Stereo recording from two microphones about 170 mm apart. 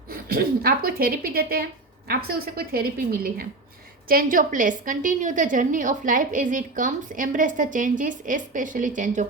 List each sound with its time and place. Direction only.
0.1 s a woman's voice: 60° right (ahead or behind)